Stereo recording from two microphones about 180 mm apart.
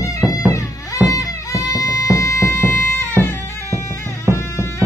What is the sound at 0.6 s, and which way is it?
Music, 20° left (ahead or behind).